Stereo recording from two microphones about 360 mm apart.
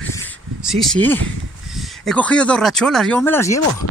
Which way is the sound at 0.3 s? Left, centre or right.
Centre.